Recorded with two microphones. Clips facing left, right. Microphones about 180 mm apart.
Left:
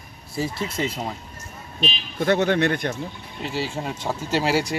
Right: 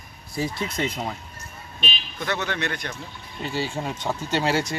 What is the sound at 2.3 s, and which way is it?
Speech, 50° left (ahead or behind).